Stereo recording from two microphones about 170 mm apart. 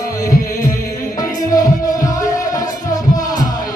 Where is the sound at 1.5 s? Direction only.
20° left (ahead or behind).